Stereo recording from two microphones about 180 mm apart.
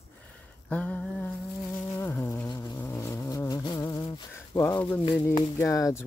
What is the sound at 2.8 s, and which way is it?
Cat, 15° left (ahead or behind).